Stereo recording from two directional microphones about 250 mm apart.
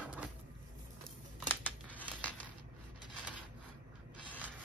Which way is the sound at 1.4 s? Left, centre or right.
Centre.